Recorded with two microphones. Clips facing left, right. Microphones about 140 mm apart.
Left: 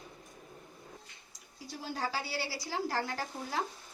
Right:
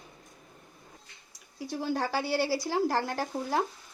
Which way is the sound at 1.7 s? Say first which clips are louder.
Right 7 dB; 65° right (ahead or behind).